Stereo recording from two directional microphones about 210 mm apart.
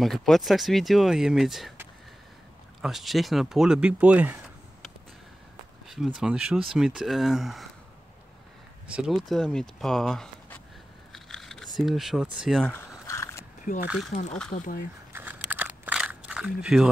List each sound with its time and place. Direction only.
0.0 s speech: centre (ahead or behind)
5.9 s speech: 5° right (ahead or behind)
8.9 s speech: centre (ahead or behind)
11.1 s crushing: centre (ahead or behind)
11.7 s speech: centre (ahead or behind)
13.0 s dog: 15° left (ahead or behind)
14.5 s speech: 40° left (ahead or behind)
15.1 s crunch: 10° right (ahead or behind)